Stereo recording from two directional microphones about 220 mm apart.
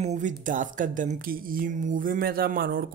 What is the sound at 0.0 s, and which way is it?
Speech, 35° right (ahead or behind).